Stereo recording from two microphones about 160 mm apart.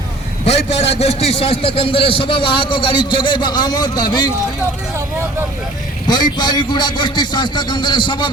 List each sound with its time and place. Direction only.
0.4 s a man's voice: 40° left (ahead or behind)
6.1 s a man's voice: 25° left (ahead or behind)